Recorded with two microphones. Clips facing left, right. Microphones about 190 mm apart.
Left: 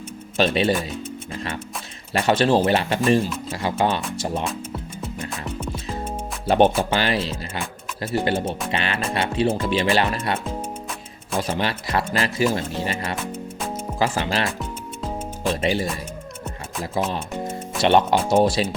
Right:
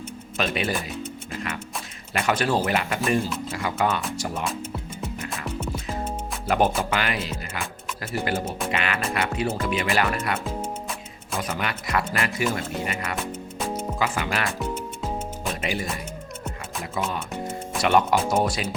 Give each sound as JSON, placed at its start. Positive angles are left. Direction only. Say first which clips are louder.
{"t": 0.3, "sound": "speech", "louder": "left 6 dB", "side_deg": 30}
{"t": 2.1, "sound": "speech", "louder": "left 5 dB", "side_deg": 30}
{"t": 6.4, "sound": "speech", "louder": "left 5 dB", "side_deg": 30}
{"t": 15.4, "sound": "speech", "louder": "left 8 dB", "side_deg": 30}
{"t": 17.0, "sound": "speech", "louder": "left 4 dB", "side_deg": 30}